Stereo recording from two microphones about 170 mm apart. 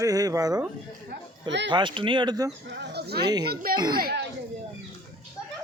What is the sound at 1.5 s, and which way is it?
Speech, 90° right.